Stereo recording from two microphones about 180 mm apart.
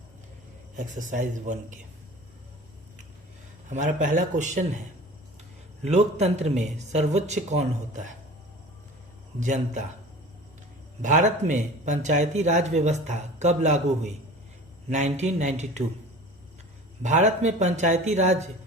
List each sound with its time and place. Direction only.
0.8 s speech: 45° right (ahead or behind)
3.7 s speech: 45° right (ahead or behind)
5.8 s speech: 35° right (ahead or behind)
9.4 s speech: 45° right (ahead or behind)
11.0 s speech: 45° right (ahead or behind)
17.0 s speech: 40° right (ahead or behind)